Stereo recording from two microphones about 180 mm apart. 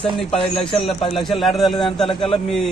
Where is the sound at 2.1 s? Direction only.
30° left (ahead or behind).